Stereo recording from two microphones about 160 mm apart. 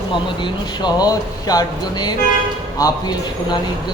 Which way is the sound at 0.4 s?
25° left (ahead or behind).